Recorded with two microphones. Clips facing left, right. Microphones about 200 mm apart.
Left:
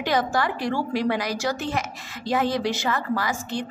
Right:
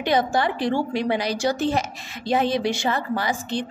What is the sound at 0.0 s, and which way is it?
A woman's voice, 25° right (ahead or behind).